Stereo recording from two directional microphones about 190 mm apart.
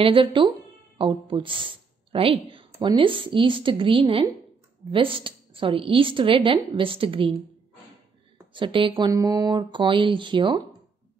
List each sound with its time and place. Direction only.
0.0 s a woman's voice: 25° right (ahead or behind)
8.5 s a woman's voice: 25° right (ahead or behind)